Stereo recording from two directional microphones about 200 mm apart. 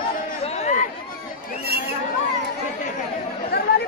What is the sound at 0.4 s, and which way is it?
Chatter, 35° left (ahead or behind).